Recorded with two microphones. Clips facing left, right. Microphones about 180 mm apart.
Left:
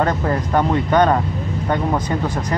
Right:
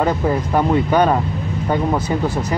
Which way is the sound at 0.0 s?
5° right (ahead or behind).